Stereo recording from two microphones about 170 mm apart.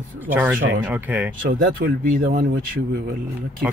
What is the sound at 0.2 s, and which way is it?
Speech, 10° right (ahead or behind).